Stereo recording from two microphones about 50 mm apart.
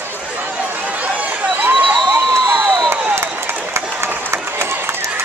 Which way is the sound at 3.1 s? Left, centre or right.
Right.